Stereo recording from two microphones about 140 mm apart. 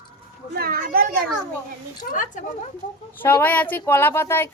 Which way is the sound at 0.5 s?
90° right.